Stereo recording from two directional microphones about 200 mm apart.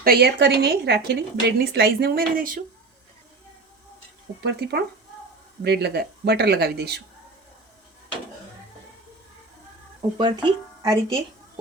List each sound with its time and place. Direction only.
0.0 s speech: 50° right (ahead or behind)
5.6 s speech: 55° right (ahead or behind)
10.2 s speech: 25° right (ahead or behind)